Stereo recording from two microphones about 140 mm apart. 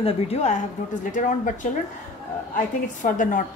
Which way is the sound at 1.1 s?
65° left (ahead or behind).